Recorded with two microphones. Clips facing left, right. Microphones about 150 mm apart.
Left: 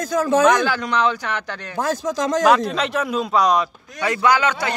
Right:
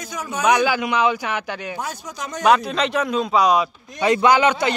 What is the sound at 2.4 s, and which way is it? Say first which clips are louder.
A man's voice: right 2 dB; centre (ahead or behind).